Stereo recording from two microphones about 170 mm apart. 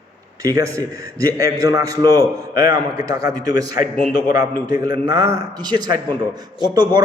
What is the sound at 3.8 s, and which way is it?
Speech, 55° left (ahead or behind).